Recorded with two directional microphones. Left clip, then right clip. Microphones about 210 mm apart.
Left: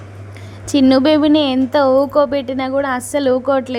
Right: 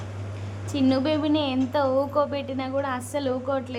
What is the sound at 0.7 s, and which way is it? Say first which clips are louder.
Speech: left 11 dB; 35° left (ahead or behind).